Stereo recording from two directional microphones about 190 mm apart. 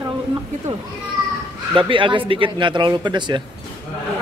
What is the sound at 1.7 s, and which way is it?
A man's voice, 25° right (ahead or behind).